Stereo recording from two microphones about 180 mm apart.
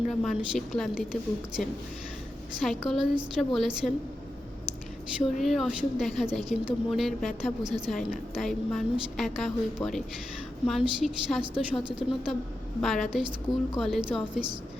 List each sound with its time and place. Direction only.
0.1 s a woman's voice: centre (ahead or behind)
5.4 s a woman's voice: centre (ahead or behind)
11.8 s a woman's voice: 25° right (ahead or behind)
12.8 s a woman's voice: centre (ahead or behind)